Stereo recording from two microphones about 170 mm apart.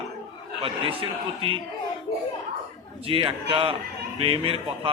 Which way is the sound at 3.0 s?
30° right (ahead or behind).